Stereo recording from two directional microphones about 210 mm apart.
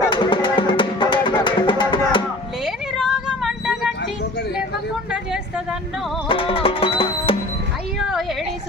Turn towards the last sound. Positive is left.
turn(degrees=25)  # may be behind; listen again after turning